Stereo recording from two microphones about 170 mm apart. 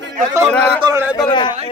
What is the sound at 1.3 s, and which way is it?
Speech, 25° left (ahead or behind).